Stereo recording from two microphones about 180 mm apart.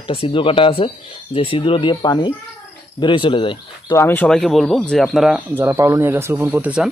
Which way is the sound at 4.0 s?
10° left (ahead or behind).